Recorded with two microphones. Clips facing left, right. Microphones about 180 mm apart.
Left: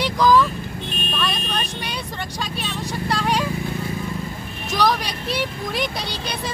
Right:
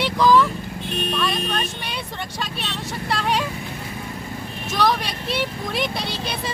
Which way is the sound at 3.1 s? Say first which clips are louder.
Left 1 dB; centre (ahead or behind).